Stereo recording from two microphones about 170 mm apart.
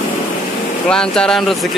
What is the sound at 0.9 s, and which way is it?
Speech, 5° left (ahead or behind).